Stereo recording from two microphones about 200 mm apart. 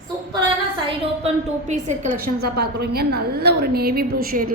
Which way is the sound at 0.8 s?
35° right (ahead or behind).